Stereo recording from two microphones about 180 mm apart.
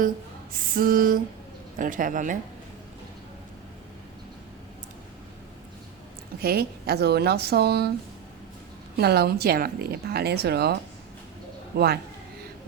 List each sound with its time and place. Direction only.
0.5 s lullaby: 50° right (ahead or behind)
6.4 s a woman's voice: 60° right (ahead or behind)
9.0 s a woman's voice: 60° right (ahead or behind)